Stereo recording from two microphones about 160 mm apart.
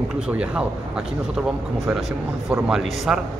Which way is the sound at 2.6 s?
5° right (ahead or behind).